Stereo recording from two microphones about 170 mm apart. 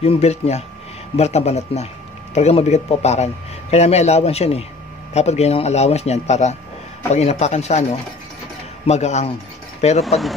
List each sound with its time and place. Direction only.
0.0 s a man's voice: 35° left (ahead or behind)